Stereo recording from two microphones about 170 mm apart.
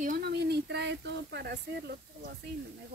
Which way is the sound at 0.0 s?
60° right (ahead or behind).